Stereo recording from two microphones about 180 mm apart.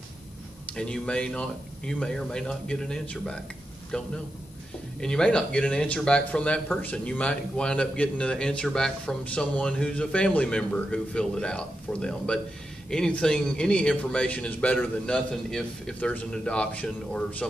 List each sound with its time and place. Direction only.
0.7 s speech: 5° left (ahead or behind)